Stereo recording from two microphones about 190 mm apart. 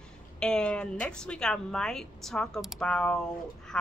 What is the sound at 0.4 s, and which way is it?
A woman's voice, 5° left (ahead or behind).